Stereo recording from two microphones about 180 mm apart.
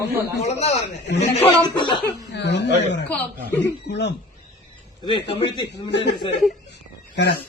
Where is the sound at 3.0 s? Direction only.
10° left (ahead or behind).